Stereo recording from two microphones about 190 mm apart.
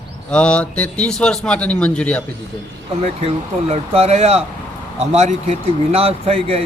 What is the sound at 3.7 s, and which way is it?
Speech, 35° right (ahead or behind).